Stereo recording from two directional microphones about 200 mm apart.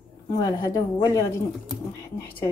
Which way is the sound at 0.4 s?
20° left (ahead or behind).